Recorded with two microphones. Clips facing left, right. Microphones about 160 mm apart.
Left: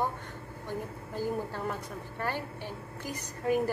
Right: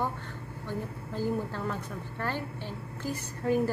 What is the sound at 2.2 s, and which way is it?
A woman's voice, 15° left (ahead or behind).